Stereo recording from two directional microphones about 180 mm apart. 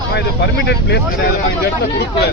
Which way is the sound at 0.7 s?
70° left (ahead or behind).